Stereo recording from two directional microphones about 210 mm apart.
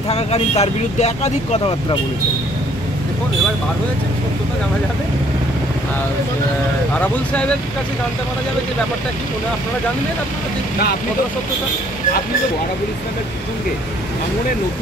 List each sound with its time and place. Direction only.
0.1 s speech: 30° left (ahead or behind)